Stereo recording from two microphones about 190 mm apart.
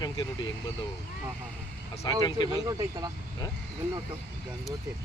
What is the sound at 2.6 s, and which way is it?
Speech, 20° right (ahead or behind).